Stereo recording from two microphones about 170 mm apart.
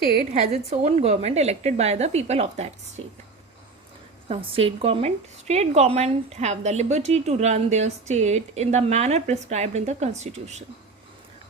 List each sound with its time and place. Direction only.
0.3 s a woman's voice: 40° right (ahead or behind)
4.3 s a woman's voice: 35° right (ahead or behind)